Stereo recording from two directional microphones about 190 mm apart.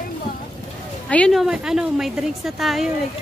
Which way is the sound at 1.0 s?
5° left (ahead or behind).